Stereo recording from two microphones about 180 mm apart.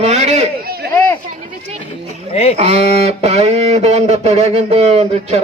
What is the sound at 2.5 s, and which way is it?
Speech, 35° right (ahead or behind).